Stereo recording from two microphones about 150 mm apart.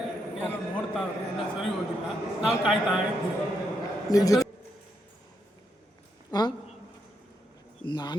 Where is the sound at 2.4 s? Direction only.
5° right (ahead or behind).